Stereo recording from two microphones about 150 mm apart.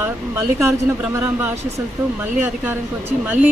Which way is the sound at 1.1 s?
15° right (ahead or behind).